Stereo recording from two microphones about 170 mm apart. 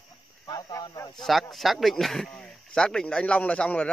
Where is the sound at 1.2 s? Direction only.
Centre (ahead or behind).